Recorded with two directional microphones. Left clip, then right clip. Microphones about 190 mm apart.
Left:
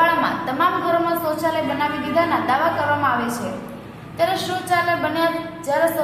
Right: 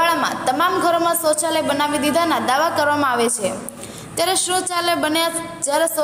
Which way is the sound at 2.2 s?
45° right (ahead or behind).